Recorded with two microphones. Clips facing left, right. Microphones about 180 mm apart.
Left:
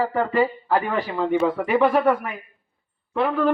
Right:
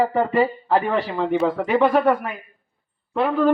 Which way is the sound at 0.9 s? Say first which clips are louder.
Right 1 dB; centre (ahead or behind).